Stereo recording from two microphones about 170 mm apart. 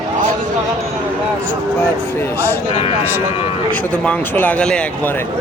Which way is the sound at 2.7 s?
40° left (ahead or behind).